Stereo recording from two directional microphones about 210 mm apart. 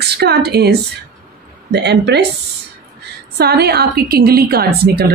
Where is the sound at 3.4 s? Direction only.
50° right (ahead or behind).